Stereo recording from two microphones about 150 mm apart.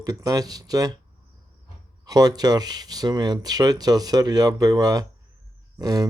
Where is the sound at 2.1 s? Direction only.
25° right (ahead or behind).